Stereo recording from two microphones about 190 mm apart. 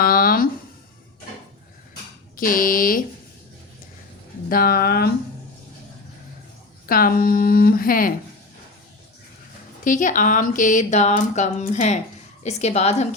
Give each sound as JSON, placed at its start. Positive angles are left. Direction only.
{"t": 0.0, "sound": "a sound", "side_deg": 50}
{"t": 2.3, "sound": "speech", "side_deg": 45}
{"t": 4.4, "sound": "speech", "side_deg": 50}
{"t": 6.8, "sound": "speech", "side_deg": 50}
{"t": 9.8, "sound": "a woman's voice", "side_deg": 40}